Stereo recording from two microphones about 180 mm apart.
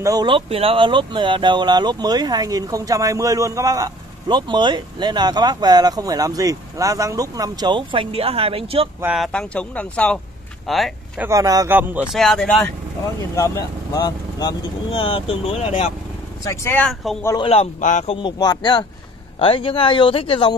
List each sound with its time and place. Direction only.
0.0 s speech: 20° right (ahead or behind)
9.0 s speech: centre (ahead or behind)
11.2 s a man's voice: 20° right (ahead or behind); by 12.6 s 5° left (ahead or behind)
13.4 s speech: 20° left (ahead or behind)
16.4 s speech: 10° left (ahead or behind)
17.4 s a man's voice: 35° left (ahead or behind)
18.1 s speech: 25° left (ahead or behind)